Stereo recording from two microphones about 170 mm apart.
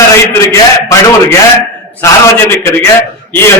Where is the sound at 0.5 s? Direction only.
20° left (ahead or behind).